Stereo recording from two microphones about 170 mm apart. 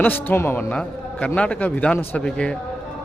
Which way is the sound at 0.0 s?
10° left (ahead or behind).